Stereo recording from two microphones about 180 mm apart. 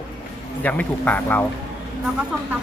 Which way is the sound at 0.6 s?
10° left (ahead or behind).